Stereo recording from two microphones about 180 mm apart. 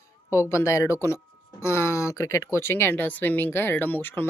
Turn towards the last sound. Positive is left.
turn(degrees=10)  # may be behind; listen again after turning